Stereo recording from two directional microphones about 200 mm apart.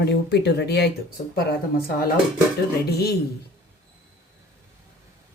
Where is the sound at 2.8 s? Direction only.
50° left (ahead or behind).